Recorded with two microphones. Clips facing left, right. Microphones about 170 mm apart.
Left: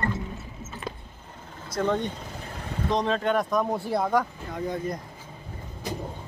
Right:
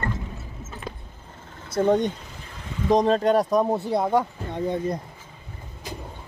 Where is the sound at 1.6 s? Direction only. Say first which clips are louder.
Right 6 dB; 30° right (ahead or behind).